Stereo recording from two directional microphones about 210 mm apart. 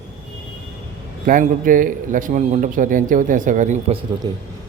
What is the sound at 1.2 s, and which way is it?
A man's voice, 40° right (ahead or behind).